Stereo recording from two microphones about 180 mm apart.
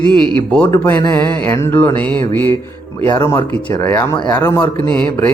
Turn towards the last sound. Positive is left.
turn(degrees=5)  # may be behind; listen again after turning